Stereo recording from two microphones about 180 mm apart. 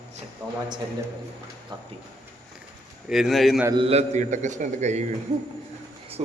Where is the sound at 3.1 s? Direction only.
Centre (ahead or behind).